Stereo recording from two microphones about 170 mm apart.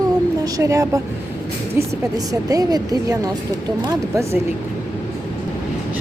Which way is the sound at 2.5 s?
20° right (ahead or behind).